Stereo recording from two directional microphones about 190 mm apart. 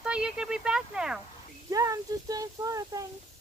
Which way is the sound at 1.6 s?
15° right (ahead or behind).